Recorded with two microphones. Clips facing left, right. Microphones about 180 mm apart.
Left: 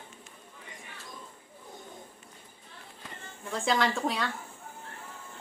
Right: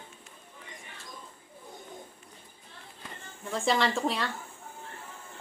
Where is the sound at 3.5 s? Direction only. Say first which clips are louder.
Right 1 dB; centre (ahead or behind).